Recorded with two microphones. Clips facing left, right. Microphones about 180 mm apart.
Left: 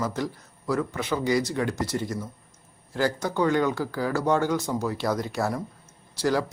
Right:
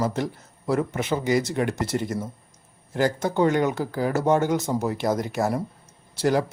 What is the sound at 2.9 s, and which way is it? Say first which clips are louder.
A man's voice: right 3 dB; 20° right (ahead or behind).